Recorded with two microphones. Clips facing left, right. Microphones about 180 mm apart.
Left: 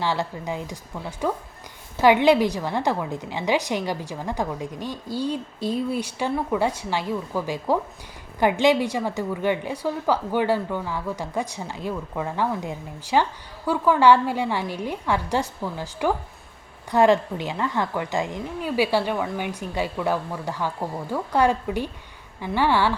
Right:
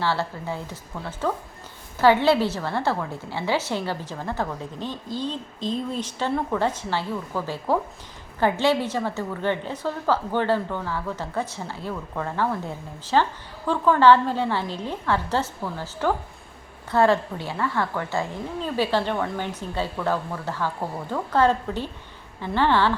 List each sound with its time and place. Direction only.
0.0 s a woman's voice: 15° left (ahead or behind)